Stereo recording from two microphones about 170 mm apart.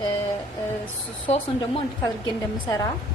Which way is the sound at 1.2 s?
30° left (ahead or behind).